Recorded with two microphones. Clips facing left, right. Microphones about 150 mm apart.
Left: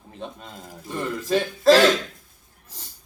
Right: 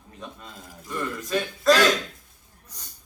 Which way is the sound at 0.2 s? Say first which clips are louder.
Left 4 dB; 30° left (ahead or behind).